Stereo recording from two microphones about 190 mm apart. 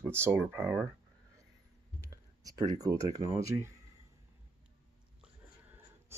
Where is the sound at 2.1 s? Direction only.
20° right (ahead or behind).